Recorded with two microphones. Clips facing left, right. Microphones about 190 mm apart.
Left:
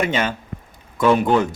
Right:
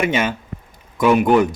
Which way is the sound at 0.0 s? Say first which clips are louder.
Right 2 dB; 10° right (ahead or behind).